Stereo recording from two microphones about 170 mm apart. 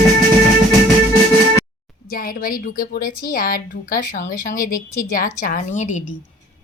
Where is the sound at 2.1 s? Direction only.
60° left (ahead or behind).